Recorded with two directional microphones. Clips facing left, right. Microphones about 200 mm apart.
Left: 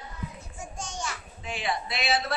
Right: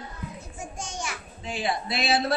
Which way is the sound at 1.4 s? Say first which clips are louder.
Right 2 dB; 35° right (ahead or behind).